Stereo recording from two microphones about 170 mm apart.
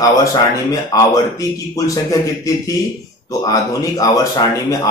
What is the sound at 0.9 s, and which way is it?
Speech, 20° left (ahead or behind).